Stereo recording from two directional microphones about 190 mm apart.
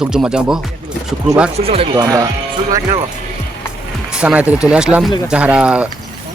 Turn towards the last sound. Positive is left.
turn(degrees=-5)  # may be behind; listen again after turning